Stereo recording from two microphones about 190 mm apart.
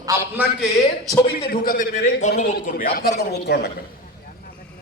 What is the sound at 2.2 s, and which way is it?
Speech, 40° left (ahead or behind).